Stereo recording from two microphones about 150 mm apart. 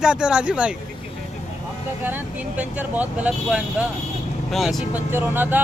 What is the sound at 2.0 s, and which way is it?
Speech, 10° right (ahead or behind).